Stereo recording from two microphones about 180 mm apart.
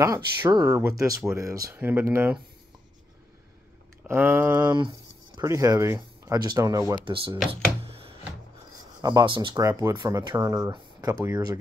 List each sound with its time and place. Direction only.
0.0 s speech: 20° right (ahead or behind)
4.0 s speech: 10° right (ahead or behind)
7.8 s a sound: 30° right (ahead or behind)
9.0 s speech: 25° right (ahead or behind)